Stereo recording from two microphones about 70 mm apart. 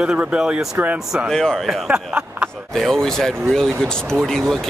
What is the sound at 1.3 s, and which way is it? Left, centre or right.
Speech, centre.